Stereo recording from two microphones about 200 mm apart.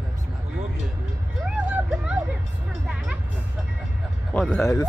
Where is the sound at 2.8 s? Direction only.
5° right (ahead or behind).